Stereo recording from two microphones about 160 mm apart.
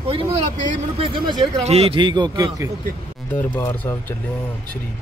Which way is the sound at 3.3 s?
15° left (ahead or behind).